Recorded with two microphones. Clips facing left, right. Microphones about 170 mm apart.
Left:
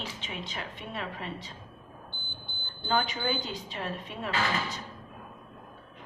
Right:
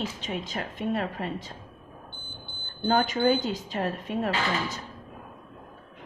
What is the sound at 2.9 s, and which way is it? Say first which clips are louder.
A woman's voice: right 7 dB; 45° right (ahead or behind).